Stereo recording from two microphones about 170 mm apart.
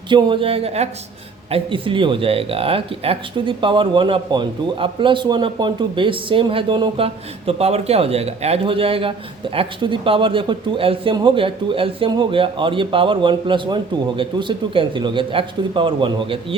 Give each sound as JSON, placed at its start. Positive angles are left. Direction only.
{"t": 0.1, "sound": "speech", "side_deg": -30}